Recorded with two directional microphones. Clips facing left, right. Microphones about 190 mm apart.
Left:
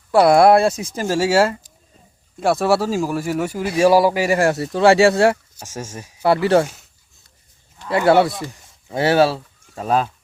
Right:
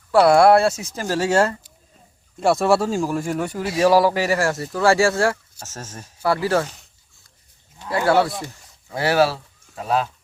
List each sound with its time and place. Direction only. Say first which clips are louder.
0.1 s speech: left 1 dB; 15° left (ahead or behind)
6.2 s speech: left 5 dB; 25° left (ahead or behind)
7.9 s speech: left 4 dB; 25° left (ahead or behind)